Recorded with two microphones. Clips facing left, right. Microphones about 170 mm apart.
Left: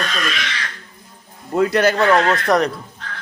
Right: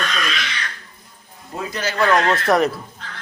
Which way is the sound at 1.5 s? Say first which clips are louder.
Left 11 dB; 65° left (ahead or behind).